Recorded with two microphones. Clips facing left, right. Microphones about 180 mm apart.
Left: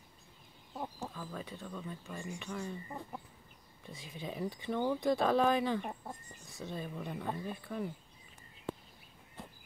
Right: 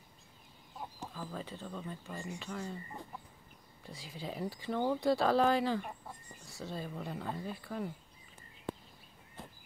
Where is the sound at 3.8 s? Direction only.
20° left (ahead or behind).